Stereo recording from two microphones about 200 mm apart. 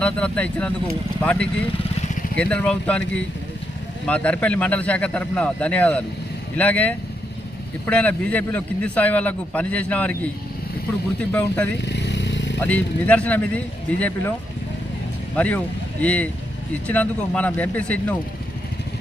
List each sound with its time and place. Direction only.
0.0 s a man's voice: 5° left (ahead or behind)
11.2 s a man's voice: 10° left (ahead or behind)
11.8 s motorcycle: 60° left (ahead or behind)
12.5 s a man's voice: 5° left (ahead or behind)
15.4 s a man's voice: 5° left (ahead or behind)